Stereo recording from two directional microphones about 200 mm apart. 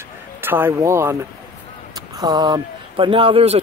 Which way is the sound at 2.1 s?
20° right (ahead or behind).